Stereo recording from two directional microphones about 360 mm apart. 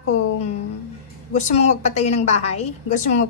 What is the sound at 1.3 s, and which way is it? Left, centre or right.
A woman's voice, centre.